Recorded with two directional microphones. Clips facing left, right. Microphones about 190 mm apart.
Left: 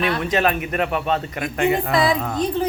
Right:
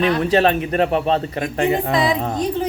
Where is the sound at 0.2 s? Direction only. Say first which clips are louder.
Right 4 dB; 30° right (ahead or behind).